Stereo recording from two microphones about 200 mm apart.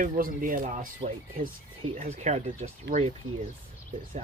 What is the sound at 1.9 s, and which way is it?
Speech, 35° right (ahead or behind).